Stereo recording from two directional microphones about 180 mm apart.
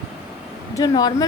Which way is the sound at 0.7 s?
20° left (ahead or behind).